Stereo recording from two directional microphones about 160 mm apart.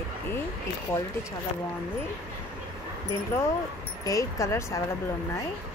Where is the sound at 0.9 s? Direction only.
15° left (ahead or behind).